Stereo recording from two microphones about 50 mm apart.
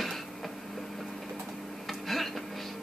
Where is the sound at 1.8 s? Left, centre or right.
Centre.